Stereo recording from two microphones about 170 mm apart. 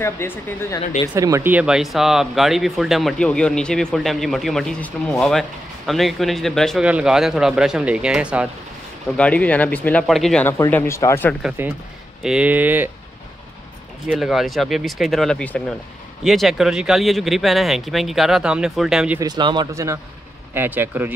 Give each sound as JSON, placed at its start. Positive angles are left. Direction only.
{"t": 0.0, "sound": "speech", "side_deg": 15}
{"t": 1.1, "sound": "speech", "side_deg": -15}
{"t": 9.1, "sound": "speech", "side_deg": 5}
{"t": 11.4, "sound": "speech", "side_deg": -10}
{"t": 14.0, "sound": "speech", "side_deg": -5}
{"t": 19.1, "sound": "speech", "side_deg": -25}